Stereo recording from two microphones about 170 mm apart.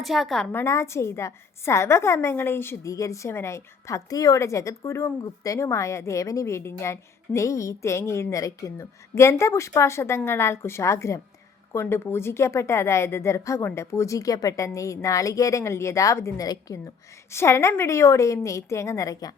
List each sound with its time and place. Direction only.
0.0 s a woman's voice: centre (ahead or behind)
0.5 s a woman's voice: 15° left (ahead or behind)